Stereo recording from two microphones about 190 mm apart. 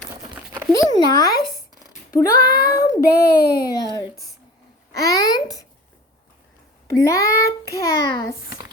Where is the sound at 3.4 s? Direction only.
55° left (ahead or behind).